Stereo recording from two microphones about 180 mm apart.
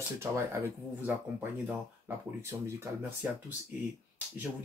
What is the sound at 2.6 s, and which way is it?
Speech, 15° right (ahead or behind).